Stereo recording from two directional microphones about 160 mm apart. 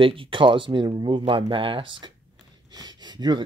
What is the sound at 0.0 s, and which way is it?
Speech, 35° right (ahead or behind).